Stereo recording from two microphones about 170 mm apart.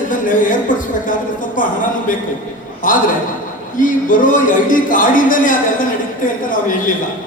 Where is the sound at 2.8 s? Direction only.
50° left (ahead or behind).